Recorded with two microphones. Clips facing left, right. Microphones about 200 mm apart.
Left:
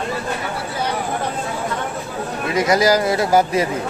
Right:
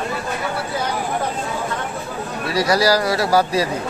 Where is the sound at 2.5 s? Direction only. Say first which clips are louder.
Left 1 dB; 20° left (ahead or behind).